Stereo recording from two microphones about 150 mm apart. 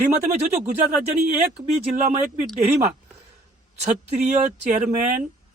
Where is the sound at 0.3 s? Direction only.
50° right (ahead or behind).